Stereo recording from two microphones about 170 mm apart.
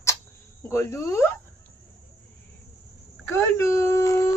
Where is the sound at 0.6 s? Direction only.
15° left (ahead or behind).